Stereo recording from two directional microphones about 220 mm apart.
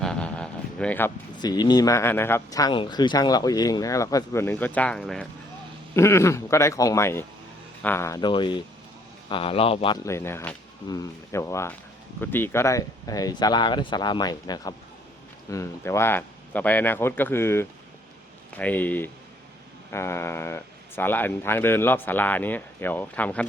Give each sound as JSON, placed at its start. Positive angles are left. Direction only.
{"t": 0.0, "sound": "a man's voice", "side_deg": 5}
{"t": 10.1, "sound": "speech", "side_deg": 10}